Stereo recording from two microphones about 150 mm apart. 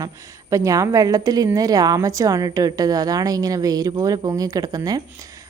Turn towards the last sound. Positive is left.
turn(degrees=-25)  # may be behind; listen again after turning